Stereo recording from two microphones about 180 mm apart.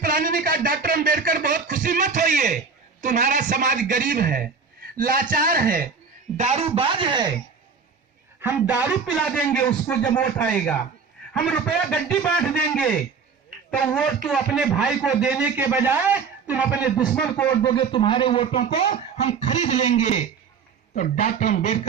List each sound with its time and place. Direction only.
0.0 s a sound: 50° right (ahead or behind)
3.0 s a man's voice: 45° right (ahead or behind)
6.3 s speech: 40° right (ahead or behind)
8.4 s a man's voice: 10° right (ahead or behind); by 13.0 s 5° left (ahead or behind)
13.5 s a sound: 50° right (ahead or behind)
13.8 s a man's voice: 5° left (ahead or behind)
17.2 s a man's voice: 10° left (ahead or behind); by 21.8 s 45° left (ahead or behind)